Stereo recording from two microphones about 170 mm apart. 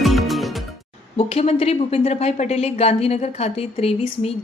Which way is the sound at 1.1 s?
35° left (ahead or behind).